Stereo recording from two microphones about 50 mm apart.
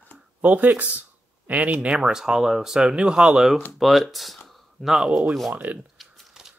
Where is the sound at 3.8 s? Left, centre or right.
Centre.